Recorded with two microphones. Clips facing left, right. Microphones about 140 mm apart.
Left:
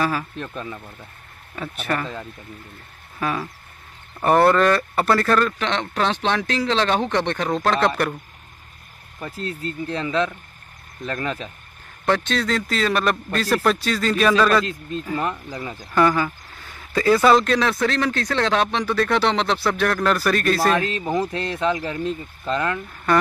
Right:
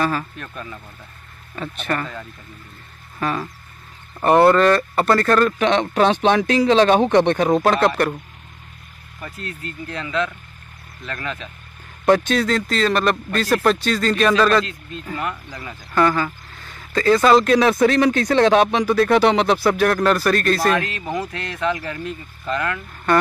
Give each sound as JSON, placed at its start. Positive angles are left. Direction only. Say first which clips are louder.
{"t": 0.0, "sound": "speech", "louder": "right 1 dB", "side_deg": 5}
{"t": 0.4, "sound": "speech", "louder": "left 3 dB", "side_deg": 20}
{"t": 1.5, "sound": "speech", "louder": "right 1 dB", "side_deg": 10}
{"t": 3.2, "sound": "speech", "louder": "right 1 dB", "side_deg": 5}
{"t": 5.6, "sound": "speech", "louder": "right 6 dB", "side_deg": -15}
{"t": 9.2, "sound": "speech", "louder": "left 4 dB", "side_deg": 30}
{"t": 12.1, "sound": "speech", "louder": "right 5 dB", "side_deg": -10}
{"t": 14.7, "sound": "speech", "louder": "left 5 dB", "side_deg": 40}
{"t": 15.9, "sound": "speech", "louder": "even", "side_deg": 10}
{"t": 17.5, "sound": "speech", "louder": "right 5 dB", "side_deg": -15}
{"t": 20.7, "sound": "speech", "louder": "left 1 dB", "side_deg": 25}